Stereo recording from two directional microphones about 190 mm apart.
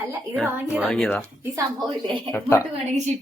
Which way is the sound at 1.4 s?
15° right (ahead or behind).